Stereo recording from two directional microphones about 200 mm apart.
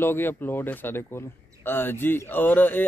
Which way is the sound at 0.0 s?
10° left (ahead or behind).